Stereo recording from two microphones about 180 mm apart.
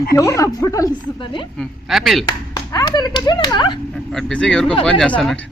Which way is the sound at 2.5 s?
20° left (ahead or behind).